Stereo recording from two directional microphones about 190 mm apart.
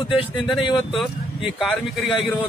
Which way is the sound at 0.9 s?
Centre (ahead or behind).